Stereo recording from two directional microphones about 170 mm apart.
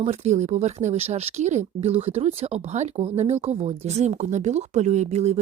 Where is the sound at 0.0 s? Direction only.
40° right (ahead or behind).